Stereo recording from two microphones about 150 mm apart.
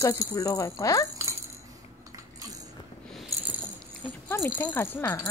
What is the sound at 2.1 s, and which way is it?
Cutlery, 25° right (ahead or behind).